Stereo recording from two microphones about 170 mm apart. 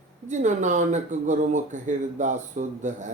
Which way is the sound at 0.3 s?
45° right (ahead or behind).